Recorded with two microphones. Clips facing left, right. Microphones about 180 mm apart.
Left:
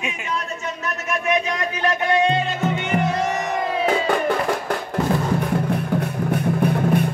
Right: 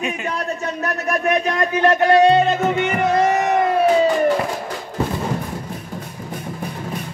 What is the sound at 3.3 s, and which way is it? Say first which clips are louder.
Crowd: right 6 dB; 55° right (ahead or behind).